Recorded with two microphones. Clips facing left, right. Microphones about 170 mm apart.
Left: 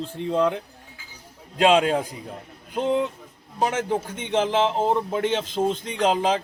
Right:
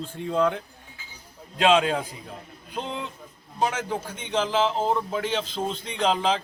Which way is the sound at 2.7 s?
50° left (ahead or behind).